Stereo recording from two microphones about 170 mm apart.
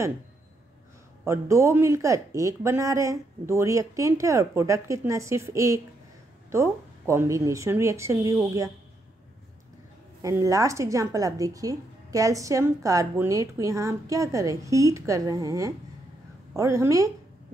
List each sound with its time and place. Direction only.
1.2 s speech: 15° right (ahead or behind)
10.2 s a woman's voice: 20° right (ahead or behind)